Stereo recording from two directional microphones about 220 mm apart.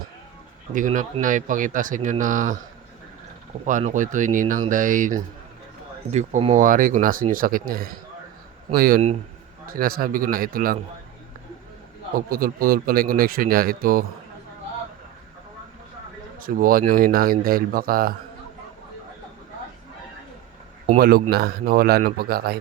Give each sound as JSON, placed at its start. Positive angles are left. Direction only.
{"t": 0.7, "sound": "speech", "side_deg": -35}
{"t": 3.7, "sound": "speech", "side_deg": -35}
{"t": 12.3, "sound": "speech", "side_deg": -40}
{"t": 16.4, "sound": "speech", "side_deg": -40}
{"t": 21.0, "sound": "speech", "side_deg": -45}